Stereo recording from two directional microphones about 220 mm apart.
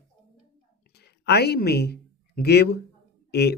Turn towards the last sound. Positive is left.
turn(degrees=50)  # may be behind; listen again after turning